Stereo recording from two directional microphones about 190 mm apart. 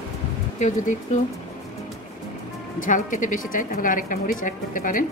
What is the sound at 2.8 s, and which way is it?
A woman's voice, 45° left (ahead or behind).